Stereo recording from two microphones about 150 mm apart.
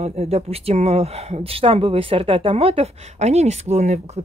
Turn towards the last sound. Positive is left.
turn(degrees=-50)  # may be behind; listen again after turning